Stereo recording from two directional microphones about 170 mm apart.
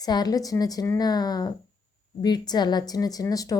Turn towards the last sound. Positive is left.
turn(degrees=20)  # may be behind; listen again after turning